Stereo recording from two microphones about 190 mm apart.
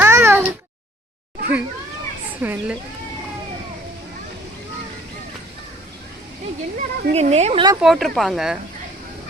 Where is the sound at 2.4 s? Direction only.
10° right (ahead or behind).